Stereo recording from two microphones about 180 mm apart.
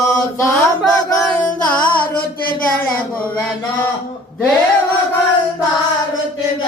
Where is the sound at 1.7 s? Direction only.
10° left (ahead or behind).